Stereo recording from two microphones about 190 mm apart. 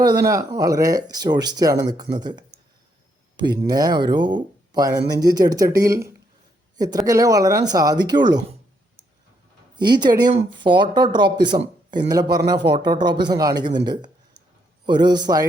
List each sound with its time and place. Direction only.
0.0 s speech: 20° right (ahead or behind)
9.7 s speech: 25° right (ahead or behind)